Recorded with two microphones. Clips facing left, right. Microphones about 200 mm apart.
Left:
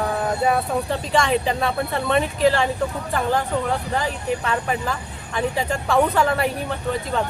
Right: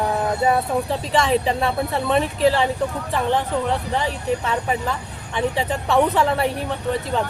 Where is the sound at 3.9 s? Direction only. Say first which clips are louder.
Right 1 dB; centre (ahead or behind).